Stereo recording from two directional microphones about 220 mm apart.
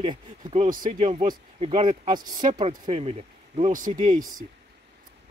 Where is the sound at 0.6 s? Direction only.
40° right (ahead or behind).